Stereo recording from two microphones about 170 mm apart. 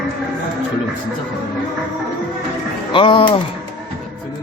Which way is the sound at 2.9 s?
30° left (ahead or behind).